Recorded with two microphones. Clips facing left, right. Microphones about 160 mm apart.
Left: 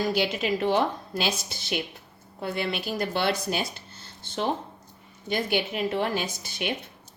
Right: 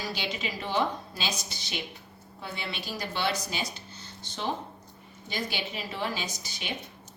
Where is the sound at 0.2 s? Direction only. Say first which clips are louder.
Left 9 dB; 60° left (ahead or behind).